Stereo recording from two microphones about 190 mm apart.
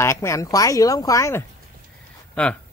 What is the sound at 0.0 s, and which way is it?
Speech, 15° left (ahead or behind).